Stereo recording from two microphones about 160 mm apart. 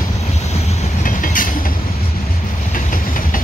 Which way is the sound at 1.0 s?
55° left (ahead or behind).